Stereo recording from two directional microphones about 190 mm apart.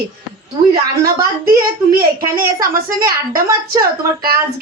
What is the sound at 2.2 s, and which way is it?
A woman's voice, 20° right (ahead or behind).